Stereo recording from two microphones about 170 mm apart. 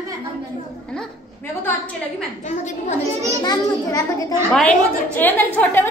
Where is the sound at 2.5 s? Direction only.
45° left (ahead or behind).